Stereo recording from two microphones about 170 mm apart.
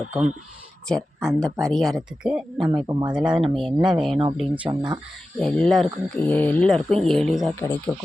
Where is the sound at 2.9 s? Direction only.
25° right (ahead or behind).